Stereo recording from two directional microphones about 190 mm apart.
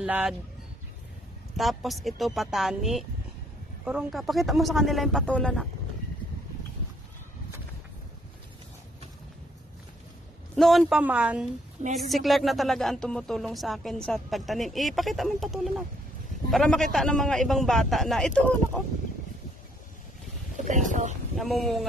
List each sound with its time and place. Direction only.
0.0 s speech: 5° right (ahead or behind)
1.6 s speech: centre (ahead or behind)
10.5 s speech: centre (ahead or behind)
20.5 s speech: 40° right (ahead or behind)
21.4 s speech: centre (ahead or behind)